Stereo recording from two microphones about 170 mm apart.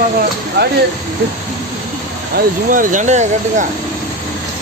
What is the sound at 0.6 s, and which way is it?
Speech, 80° right.